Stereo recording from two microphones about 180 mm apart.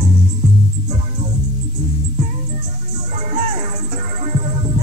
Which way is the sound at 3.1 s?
35° right (ahead or behind).